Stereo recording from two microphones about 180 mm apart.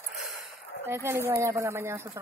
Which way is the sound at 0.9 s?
15° right (ahead or behind).